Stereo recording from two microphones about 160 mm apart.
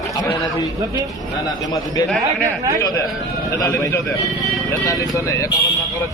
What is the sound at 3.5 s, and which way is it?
A man's voice, 20° left (ahead or behind).